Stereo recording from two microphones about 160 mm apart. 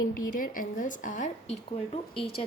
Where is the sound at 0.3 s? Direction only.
60° left (ahead or behind).